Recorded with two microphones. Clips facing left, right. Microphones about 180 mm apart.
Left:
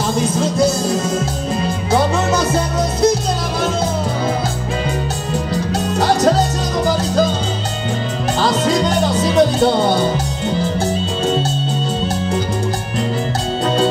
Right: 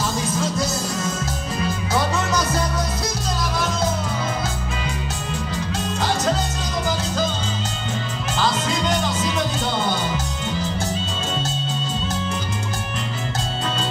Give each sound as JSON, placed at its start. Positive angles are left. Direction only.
{"t": 5.5, "sound": "music", "side_deg": 40}
{"t": 8.4, "sound": "music", "side_deg": 35}